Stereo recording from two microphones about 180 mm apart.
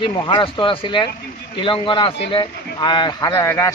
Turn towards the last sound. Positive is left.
turn(degrees=15)  # may be behind; listen again after turning